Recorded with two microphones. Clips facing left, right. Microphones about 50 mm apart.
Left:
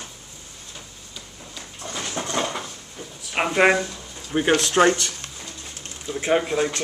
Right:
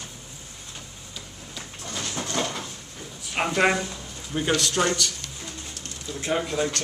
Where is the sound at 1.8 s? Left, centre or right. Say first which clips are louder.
Left 3 dB; centre.